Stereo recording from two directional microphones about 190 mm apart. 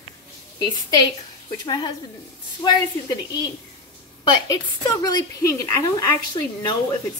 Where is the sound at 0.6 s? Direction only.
20° left (ahead or behind).